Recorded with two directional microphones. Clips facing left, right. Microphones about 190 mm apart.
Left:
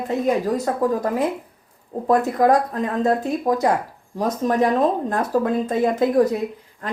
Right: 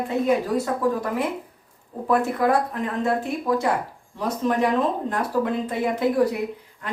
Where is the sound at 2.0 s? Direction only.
40° left (ahead or behind).